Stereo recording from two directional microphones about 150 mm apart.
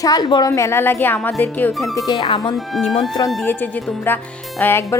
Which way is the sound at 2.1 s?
30° left (ahead or behind).